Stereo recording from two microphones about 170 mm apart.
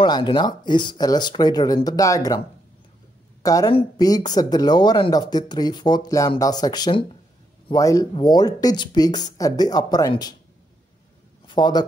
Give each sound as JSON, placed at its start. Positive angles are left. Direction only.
{"t": 0.0, "sound": "speech", "side_deg": 25}
{"t": 3.4, "sound": "speech", "side_deg": 20}
{"t": 11.4, "sound": "a man's voice", "side_deg": 25}